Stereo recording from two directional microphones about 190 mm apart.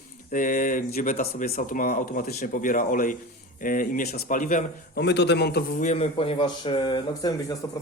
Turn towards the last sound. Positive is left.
turn(degrees=15)  # may be behind; listen again after turning